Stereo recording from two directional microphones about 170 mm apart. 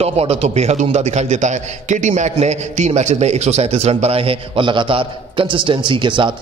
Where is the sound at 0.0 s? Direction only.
35° right (ahead or behind).